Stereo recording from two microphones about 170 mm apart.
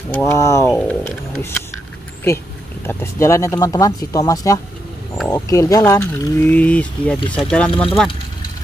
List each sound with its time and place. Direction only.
0.1 s speech: 15° left (ahead or behind)
0.7 s speech: 5° left (ahead or behind)
2.9 s speech: 15° left (ahead or behind)
7.2 s speech: 30° left (ahead or behind)
7.4 s speech: 5° left (ahead or behind)